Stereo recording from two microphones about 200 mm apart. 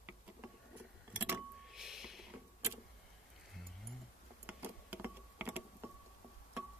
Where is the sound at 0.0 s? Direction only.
10° right (ahead or behind).